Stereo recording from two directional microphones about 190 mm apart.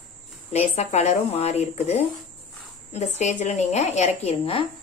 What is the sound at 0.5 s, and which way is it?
A woman's voice, 35° left (ahead or behind).